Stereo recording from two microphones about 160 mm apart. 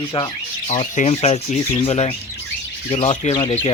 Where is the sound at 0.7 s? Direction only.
45° left (ahead or behind).